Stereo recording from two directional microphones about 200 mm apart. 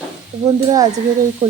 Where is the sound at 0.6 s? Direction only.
15° right (ahead or behind).